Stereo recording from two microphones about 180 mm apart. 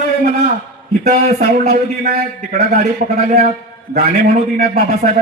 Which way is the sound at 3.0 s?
45° right (ahead or behind).